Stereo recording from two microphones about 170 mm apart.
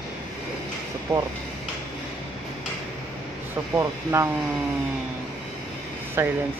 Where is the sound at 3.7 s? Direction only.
15° right (ahead or behind).